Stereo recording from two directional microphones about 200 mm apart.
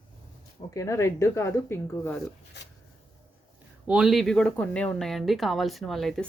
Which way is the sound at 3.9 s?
Centre (ahead or behind).